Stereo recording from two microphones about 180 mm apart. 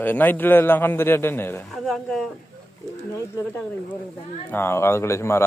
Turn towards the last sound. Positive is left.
turn(degrees=15)  # may be behind; listen again after turning